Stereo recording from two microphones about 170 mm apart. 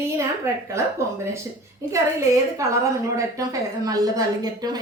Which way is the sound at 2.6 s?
20° right (ahead or behind).